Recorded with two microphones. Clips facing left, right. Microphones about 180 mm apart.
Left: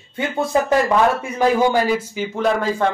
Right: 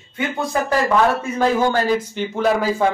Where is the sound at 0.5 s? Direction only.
25° left (ahead or behind).